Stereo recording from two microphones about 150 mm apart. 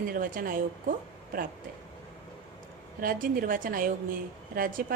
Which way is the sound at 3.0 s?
65° right (ahead or behind).